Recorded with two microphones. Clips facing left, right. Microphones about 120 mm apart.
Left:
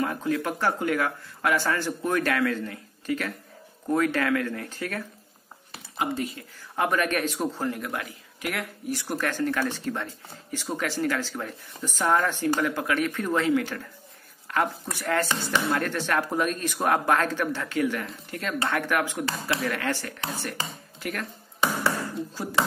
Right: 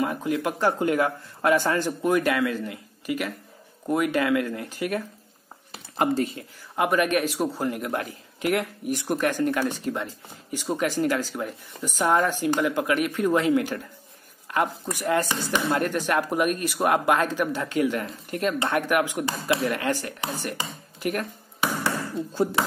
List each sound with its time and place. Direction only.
0.0 s speech: 15° right (ahead or behind)
6.1 s speech: 30° right (ahead or behind)
6.7 s speech: 10° right (ahead or behind)
22.3 s speech: 25° right (ahead or behind)